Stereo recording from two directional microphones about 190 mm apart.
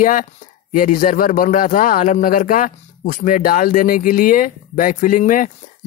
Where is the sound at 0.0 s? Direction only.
45° left (ahead or behind).